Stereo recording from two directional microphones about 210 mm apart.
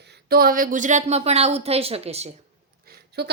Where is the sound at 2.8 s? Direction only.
50° right (ahead or behind).